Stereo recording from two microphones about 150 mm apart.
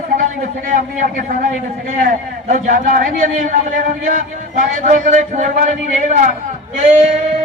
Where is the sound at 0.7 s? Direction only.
70° right (ahead or behind).